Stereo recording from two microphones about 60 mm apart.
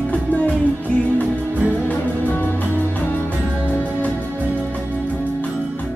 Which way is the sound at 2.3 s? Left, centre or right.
Left.